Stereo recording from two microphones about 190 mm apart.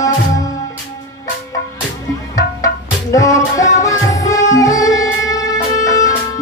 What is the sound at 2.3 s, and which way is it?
Music, 15° left (ahead or behind).